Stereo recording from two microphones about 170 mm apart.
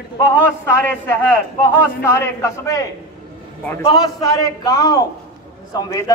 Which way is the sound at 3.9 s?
25° left (ahead or behind).